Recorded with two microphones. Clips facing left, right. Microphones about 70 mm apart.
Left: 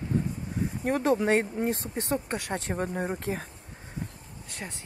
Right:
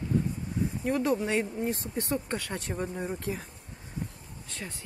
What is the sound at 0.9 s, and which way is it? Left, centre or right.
Speech, left.